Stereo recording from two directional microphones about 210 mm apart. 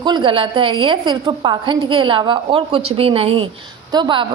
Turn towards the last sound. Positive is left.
turn(degrees=-20)  # may be behind; listen again after turning